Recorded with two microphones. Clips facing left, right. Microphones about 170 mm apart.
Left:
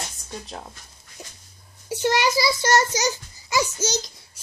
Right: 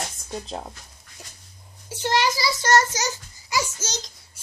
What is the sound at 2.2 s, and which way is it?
A child's voice, 15° left (ahead or behind).